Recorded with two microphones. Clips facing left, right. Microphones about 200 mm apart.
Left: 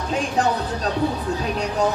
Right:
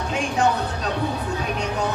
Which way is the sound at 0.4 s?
35° left (ahead or behind).